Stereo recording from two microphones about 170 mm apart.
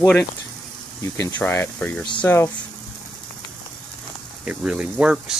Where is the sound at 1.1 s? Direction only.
15° left (ahead or behind).